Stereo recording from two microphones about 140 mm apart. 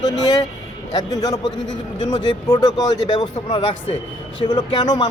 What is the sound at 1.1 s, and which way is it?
A man's voice, 25° left (ahead or behind).